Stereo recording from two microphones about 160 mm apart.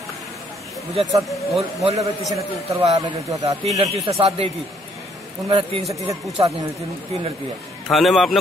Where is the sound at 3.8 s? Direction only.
40° right (ahead or behind).